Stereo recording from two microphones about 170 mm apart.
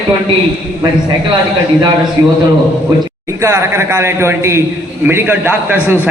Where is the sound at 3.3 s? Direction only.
15° right (ahead or behind).